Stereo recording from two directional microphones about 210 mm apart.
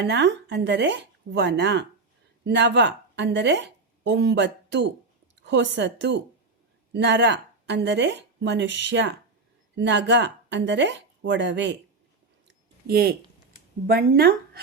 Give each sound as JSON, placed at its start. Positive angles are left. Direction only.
{"t": 0.0, "sound": "a woman's voice", "side_deg": -55}
{"t": 12.5, "sound": "a sound", "side_deg": -50}
{"t": 13.8, "sound": "speech", "side_deg": -45}